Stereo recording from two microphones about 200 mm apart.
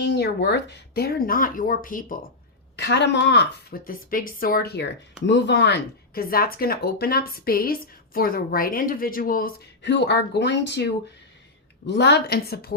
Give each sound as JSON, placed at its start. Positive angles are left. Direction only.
{"t": 0.0, "sound": "a woman's voice", "side_deg": 60}
{"t": 2.7, "sound": "a woman's voice", "side_deg": 60}